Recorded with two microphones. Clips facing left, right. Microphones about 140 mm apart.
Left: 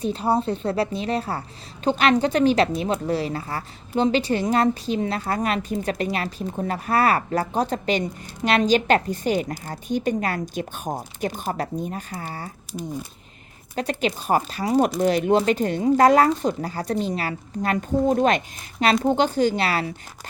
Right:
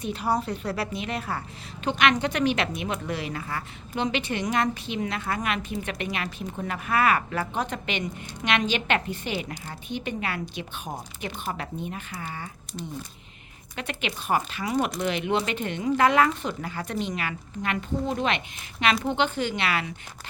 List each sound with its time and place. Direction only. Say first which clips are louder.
0.0 s a woman's voice: left 5 dB; 30° left (ahead or behind)
13.7 s a woman's voice: left 8 dB; 35° left (ahead or behind)